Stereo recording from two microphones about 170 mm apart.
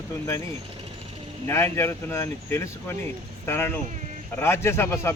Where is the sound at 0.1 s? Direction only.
15° left (ahead or behind).